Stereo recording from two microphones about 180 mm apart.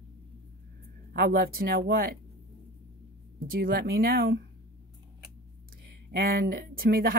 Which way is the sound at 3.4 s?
55° right (ahead or behind).